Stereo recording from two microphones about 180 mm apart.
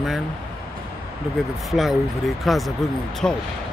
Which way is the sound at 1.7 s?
Centre (ahead or behind).